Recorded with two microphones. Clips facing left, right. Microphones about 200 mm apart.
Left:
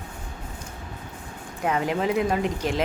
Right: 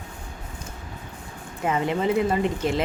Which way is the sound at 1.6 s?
Centre (ahead or behind).